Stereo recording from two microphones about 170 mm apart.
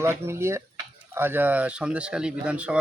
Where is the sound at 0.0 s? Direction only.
15° right (ahead or behind).